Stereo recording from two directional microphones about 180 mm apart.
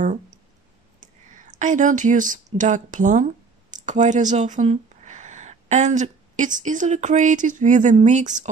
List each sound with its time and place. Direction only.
1.0 s speech: 45° right (ahead or behind)